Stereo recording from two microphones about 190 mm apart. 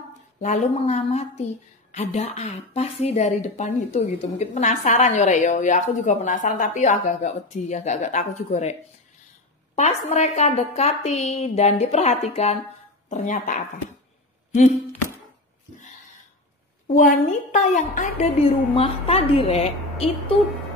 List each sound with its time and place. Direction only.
0.4 s speech: 40° left (ahead or behind)
9.8 s speech: 35° left (ahead or behind)
16.8 s speech: 45° left (ahead or behind)